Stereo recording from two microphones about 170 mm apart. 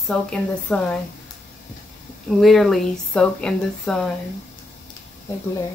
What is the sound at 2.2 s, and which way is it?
Speech, centre (ahead or behind).